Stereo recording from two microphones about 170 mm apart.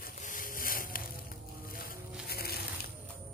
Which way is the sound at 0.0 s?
55° left (ahead or behind).